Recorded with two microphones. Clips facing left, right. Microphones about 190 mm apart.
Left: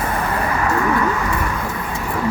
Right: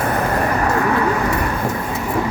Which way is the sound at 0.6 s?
35° right (ahead or behind).